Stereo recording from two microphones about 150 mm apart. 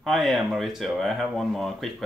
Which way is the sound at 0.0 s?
Centre (ahead or behind).